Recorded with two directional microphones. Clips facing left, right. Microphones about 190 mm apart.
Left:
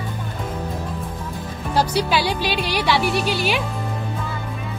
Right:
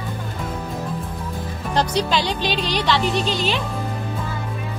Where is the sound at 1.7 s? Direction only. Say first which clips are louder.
Left 1 dB; 10° left (ahead or behind).